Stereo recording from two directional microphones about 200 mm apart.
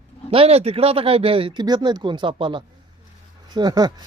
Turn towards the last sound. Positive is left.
turn(degrees=-20)  # may be behind; listen again after turning